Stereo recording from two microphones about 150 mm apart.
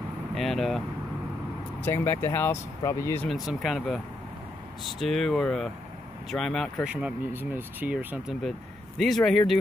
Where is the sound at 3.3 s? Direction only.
Centre (ahead or behind).